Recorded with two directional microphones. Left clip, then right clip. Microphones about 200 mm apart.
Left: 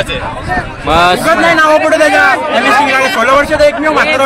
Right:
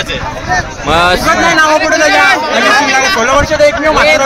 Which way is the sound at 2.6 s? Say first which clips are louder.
Left 1 dB; 55° right (ahead or behind).